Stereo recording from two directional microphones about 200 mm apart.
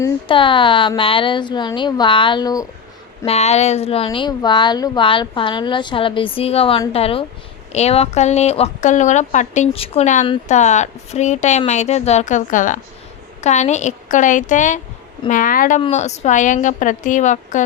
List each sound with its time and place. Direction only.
0.0 s a woman's voice: 25° left (ahead or behind)
3.2 s a woman's voice: 30° left (ahead or behind)